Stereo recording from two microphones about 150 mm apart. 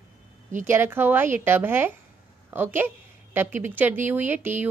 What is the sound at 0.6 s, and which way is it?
A woman's voice, 15° right (ahead or behind).